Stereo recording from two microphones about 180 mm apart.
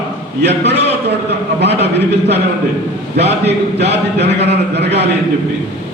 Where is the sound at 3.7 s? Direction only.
70° right (ahead or behind).